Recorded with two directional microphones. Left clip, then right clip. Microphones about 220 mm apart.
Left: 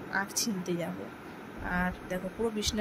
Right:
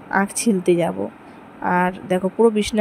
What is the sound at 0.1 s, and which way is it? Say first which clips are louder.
Speech: right 12 dB; 40° right (ahead or behind).